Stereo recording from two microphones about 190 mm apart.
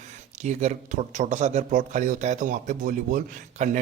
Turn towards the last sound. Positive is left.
turn(degrees=-40)  # may be behind; listen again after turning